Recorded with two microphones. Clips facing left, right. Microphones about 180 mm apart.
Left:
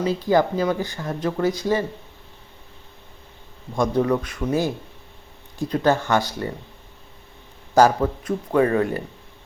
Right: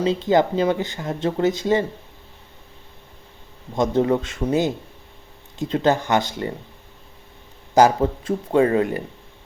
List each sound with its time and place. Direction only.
0.0 s speech: 25° right (ahead or behind)
3.8 s speech: 25° right (ahead or behind)
7.7 s speech: 20° right (ahead or behind)